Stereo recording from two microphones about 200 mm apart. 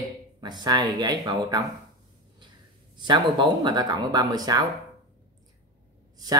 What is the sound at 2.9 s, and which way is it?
Speech, 20° right (ahead or behind).